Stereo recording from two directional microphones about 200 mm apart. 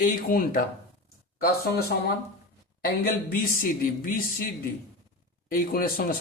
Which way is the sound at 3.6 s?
45° left (ahead or behind).